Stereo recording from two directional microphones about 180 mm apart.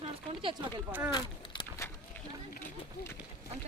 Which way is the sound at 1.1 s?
20° left (ahead or behind).